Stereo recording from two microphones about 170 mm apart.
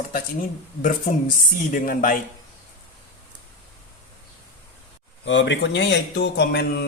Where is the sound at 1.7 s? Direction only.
55° left (ahead or behind).